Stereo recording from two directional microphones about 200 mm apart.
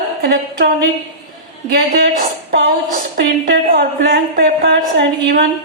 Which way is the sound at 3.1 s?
50° right (ahead or behind).